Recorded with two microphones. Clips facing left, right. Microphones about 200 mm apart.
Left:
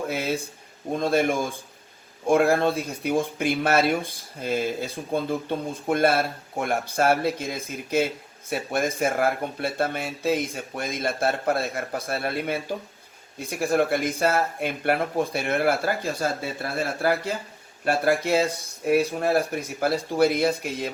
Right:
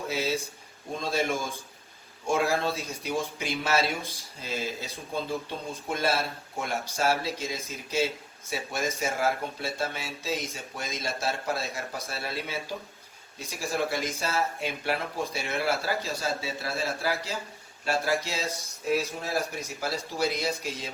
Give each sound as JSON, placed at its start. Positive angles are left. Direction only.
{"t": 0.1, "sound": "speech", "side_deg": 55}